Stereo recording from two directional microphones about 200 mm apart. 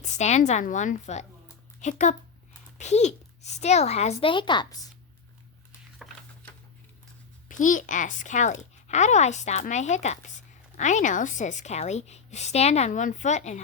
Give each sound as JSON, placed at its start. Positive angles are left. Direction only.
{"t": 0.0, "sound": "speech", "side_deg": 35}
{"t": 6.0, "sound": "a sound", "side_deg": 0}
{"t": 7.4, "sound": "speech", "side_deg": 40}